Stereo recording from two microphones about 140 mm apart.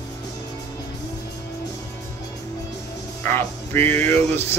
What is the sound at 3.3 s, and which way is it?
Speech, 15° left (ahead or behind).